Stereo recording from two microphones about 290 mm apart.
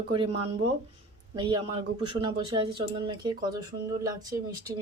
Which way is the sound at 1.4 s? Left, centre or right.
Centre.